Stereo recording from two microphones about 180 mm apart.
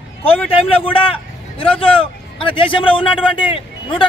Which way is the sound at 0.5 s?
30° left (ahead or behind).